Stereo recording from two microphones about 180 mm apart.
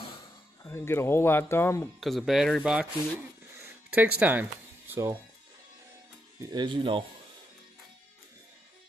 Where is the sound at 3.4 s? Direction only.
15° right (ahead or behind).